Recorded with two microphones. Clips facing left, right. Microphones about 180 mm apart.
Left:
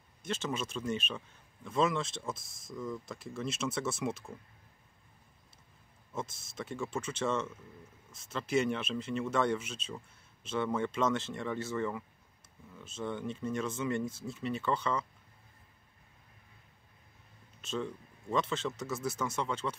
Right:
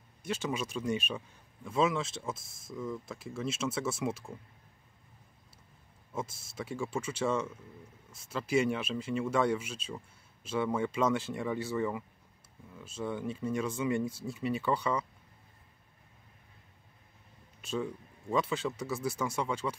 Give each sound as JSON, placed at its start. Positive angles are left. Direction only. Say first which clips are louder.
{"t": 0.2, "sound": "speech", "louder": "right 2 dB", "side_deg": -10}
{"t": 6.5, "sound": "speech", "louder": "right 2 dB", "side_deg": -10}
{"t": 17.6, "sound": "speech", "louder": "right 2 dB", "side_deg": -10}